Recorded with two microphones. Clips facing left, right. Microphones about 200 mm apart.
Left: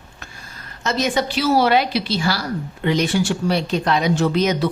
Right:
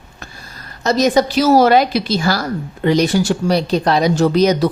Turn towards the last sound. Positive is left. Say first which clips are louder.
# right 5 dB
turn(degrees=-40)  # may be behind; listen again after turning